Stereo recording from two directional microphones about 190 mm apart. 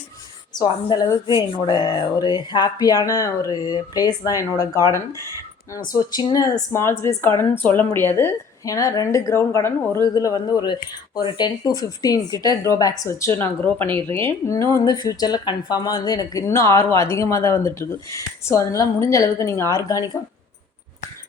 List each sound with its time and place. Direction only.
0.5 s speech: 20° left (ahead or behind)